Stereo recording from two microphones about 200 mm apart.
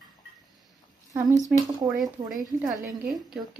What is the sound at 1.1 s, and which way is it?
Speech, 15° right (ahead or behind).